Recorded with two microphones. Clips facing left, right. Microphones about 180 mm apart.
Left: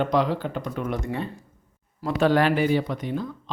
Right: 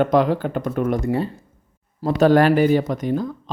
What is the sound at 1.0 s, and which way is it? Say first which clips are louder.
A man's voice: right 8 dB; 35° right (ahead or behind).